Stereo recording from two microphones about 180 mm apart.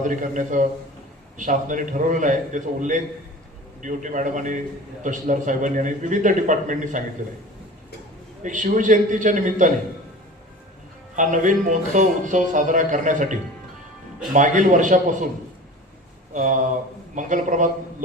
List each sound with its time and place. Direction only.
0.0 s a man's voice: 45° right (ahead or behind)
8.4 s a man's voice: 45° right (ahead or behind)
11.1 s a man's voice: 45° right (ahead or behind)
14.3 s a man's voice: 45° right (ahead or behind)
16.3 s a man's voice: 45° right (ahead or behind)